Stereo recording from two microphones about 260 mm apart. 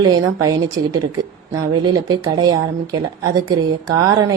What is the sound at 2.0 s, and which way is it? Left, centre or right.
A woman's voice, centre.